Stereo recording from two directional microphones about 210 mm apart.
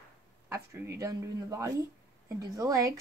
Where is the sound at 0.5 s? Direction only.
10° right (ahead or behind).